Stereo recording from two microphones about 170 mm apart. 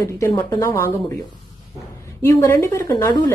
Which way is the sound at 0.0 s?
20° left (ahead or behind).